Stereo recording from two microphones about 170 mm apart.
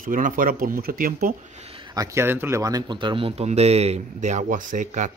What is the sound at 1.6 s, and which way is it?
Speech, 35° right (ahead or behind).